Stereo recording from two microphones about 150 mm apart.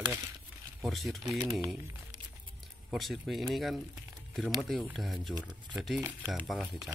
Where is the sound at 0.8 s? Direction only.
Centre (ahead or behind).